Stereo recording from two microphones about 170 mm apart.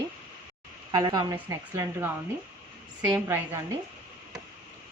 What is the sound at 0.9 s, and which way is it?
A woman's voice, 25° right (ahead or behind).